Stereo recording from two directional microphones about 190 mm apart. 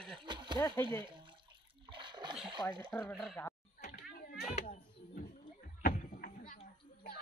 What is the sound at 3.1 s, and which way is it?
Speech, centre (ahead or behind).